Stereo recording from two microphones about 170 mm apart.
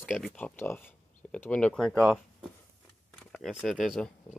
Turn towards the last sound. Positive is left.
turn(degrees=0)  # may be behind; listen again after turning